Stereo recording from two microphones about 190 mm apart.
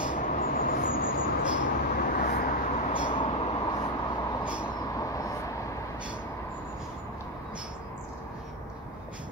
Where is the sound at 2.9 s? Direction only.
25° left (ahead or behind).